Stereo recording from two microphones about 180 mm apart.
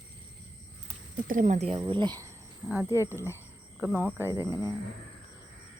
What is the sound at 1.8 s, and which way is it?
Speech, 25° right (ahead or behind).